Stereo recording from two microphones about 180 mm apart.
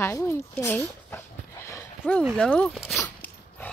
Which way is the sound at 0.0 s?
10° left (ahead or behind).